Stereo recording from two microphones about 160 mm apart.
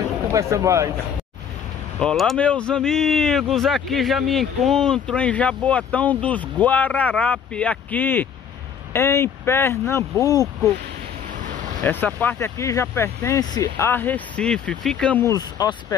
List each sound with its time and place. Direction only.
0.3 s speech: 20° right (ahead or behind)
2.0 s speech: 5° left (ahead or behind); by 10.5 s 20° left (ahead or behind)
11.4 s a sound: 50° right (ahead or behind)
11.8 s speech: 10° left (ahead or behind)
15.2 s speech: 25° left (ahead or behind)